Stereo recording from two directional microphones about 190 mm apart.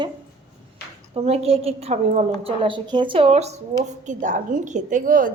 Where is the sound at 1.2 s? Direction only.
35° right (ahead or behind).